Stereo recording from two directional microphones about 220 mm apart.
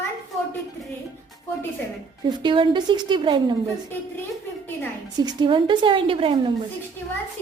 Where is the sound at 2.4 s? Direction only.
20° right (ahead or behind).